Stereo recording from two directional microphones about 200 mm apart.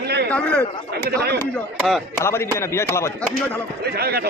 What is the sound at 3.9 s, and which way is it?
Speech, 50° right (ahead or behind).